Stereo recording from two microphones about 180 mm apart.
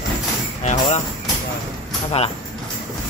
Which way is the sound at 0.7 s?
40° left (ahead or behind).